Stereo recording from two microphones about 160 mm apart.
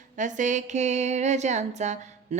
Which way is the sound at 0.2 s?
50° right (ahead or behind).